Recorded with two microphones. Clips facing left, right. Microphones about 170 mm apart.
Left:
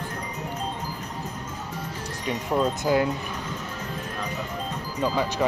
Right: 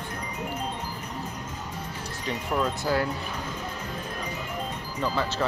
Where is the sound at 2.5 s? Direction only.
20° left (ahead or behind).